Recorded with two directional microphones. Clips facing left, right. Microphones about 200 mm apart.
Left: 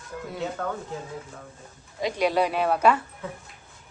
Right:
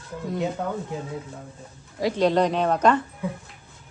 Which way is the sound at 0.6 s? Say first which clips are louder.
Right 2 dB; 15° right (ahead or behind).